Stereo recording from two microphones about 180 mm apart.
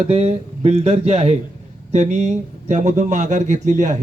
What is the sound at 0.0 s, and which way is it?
Speech, 35° right (ahead or behind).